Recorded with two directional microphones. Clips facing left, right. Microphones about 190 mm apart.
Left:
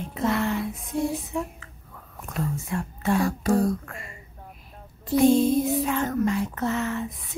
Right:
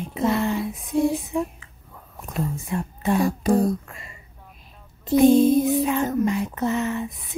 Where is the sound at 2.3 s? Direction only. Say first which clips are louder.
Right 2 dB; 20° right (ahead or behind).